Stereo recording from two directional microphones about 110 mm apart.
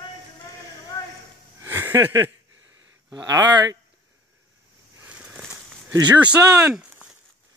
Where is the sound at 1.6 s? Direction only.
25° right (ahead or behind).